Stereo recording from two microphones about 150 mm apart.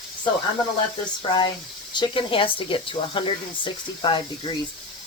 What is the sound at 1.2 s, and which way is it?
Speech, 30° left (ahead or behind).